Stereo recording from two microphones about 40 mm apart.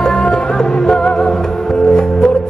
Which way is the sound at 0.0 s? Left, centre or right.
Centre.